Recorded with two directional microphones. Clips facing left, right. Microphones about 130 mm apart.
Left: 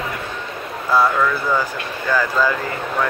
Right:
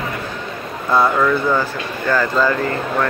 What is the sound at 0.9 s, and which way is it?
Speech, centre (ahead or behind).